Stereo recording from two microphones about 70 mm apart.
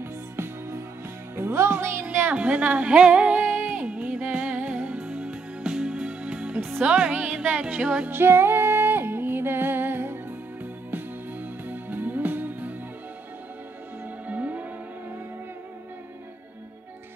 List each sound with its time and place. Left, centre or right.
0.0 s music: right
2.3 s a sound: centre
6.8 s speech: centre
8.1 s music: right
14.2 s music: right